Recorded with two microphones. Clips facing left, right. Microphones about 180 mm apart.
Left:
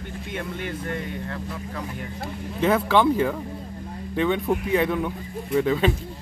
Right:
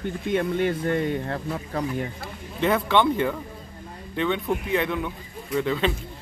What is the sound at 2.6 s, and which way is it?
Speech, 5° left (ahead or behind).